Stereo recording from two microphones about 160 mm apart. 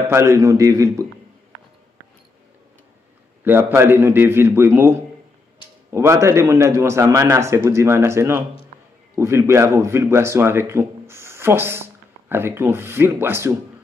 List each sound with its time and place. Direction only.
0.1 s a man's voice: 15° right (ahead or behind)
3.4 s a man's voice: 15° right (ahead or behind)